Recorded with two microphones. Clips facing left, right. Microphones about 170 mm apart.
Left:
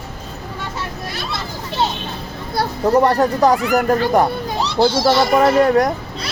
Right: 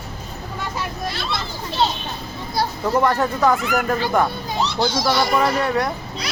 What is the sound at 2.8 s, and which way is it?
A child's voice, 35° left (ahead or behind).